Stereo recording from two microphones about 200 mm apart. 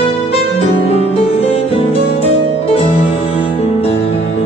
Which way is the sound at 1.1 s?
30° left (ahead or behind).